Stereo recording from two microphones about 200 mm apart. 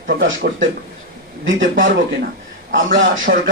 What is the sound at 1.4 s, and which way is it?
Speech, 70° right (ahead or behind).